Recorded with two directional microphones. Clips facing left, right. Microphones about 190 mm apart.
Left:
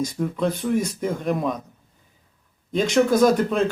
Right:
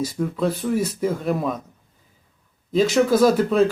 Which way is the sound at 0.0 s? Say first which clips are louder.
Right 1 dB; 5° right (ahead or behind).